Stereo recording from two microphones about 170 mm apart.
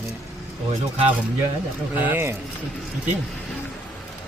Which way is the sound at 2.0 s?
15° right (ahead or behind).